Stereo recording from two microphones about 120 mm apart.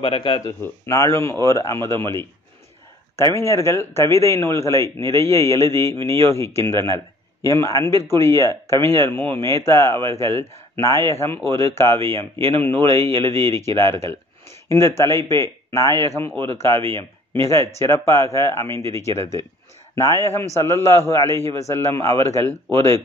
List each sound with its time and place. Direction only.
0.0 s speech: 45° left (ahead or behind)
0.5 s a man's voice: 25° left (ahead or behind)
3.3 s a man's voice: 25° left (ahead or behind)